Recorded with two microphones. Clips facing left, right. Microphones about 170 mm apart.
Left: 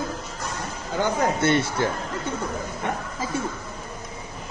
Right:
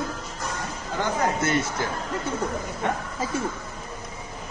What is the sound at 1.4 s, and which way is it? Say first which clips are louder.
Speech: left 3 dB; 30° left (ahead or behind).